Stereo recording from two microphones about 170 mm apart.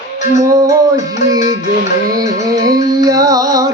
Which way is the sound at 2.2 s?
20° right (ahead or behind).